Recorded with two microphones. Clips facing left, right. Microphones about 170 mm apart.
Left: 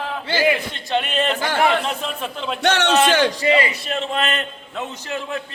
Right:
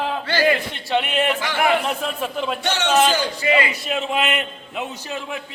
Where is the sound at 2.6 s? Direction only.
65° left (ahead or behind).